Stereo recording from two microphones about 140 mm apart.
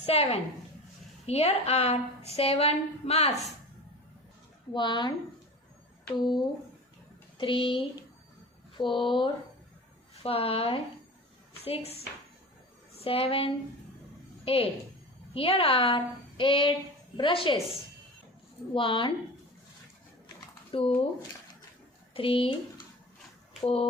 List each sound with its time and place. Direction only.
0.0 s a woman's voice: 45° left (ahead or behind)
4.7 s a woman's voice: 35° left (ahead or behind)
6.1 s a woman's voice: 35° left (ahead or behind)
13.1 s a woman's voice: 40° left (ahead or behind)
20.7 s speech: 40° left (ahead or behind)
22.1 s speech: 40° left (ahead or behind)
23.6 s a woman's voice: 45° left (ahead or behind)